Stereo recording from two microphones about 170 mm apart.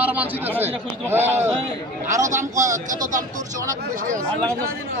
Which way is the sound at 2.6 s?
50° right (ahead or behind).